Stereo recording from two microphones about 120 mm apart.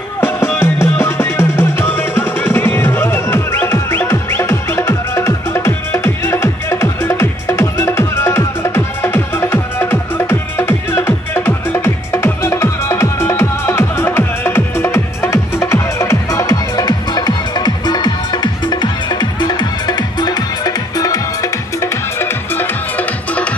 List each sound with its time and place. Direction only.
0.2 s drum: 20° left (ahead or behind)
22.2 s music: 15° left (ahead or behind)